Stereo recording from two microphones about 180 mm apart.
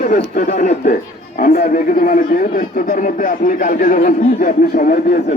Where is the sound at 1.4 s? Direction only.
50° left (ahead or behind).